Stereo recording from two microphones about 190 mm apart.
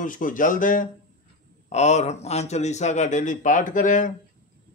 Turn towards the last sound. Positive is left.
turn(degrees=45)  # may be behind; listen again after turning